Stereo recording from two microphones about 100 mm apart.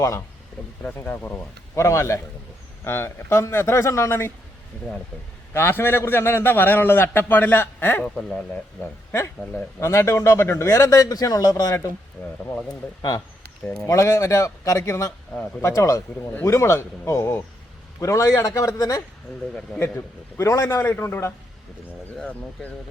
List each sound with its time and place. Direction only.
0.9 s speech: 20° left (ahead or behind)
1.7 s a man's voice: 30° left (ahead or behind)
5.5 s a man's voice: 25° left (ahead or behind)
9.8 s a man's voice: 30° left (ahead or behind)
12.2 s a man's voice: 25° left (ahead or behind)
13.0 s a man's voice: 40° left (ahead or behind)
15.3 s speech: 5° left (ahead or behind)
15.6 s a man's voice: 30° left (ahead or behind)
19.8 s a man's voice: 25° left (ahead or behind)